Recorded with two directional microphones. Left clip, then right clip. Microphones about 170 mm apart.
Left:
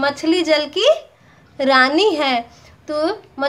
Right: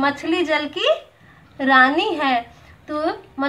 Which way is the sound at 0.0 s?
40° left (ahead or behind).